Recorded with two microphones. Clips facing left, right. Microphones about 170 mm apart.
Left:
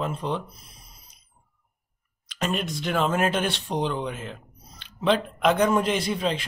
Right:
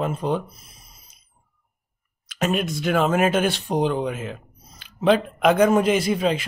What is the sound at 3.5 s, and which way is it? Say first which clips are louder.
Speech: right 5 dB; 45° right (ahead or behind).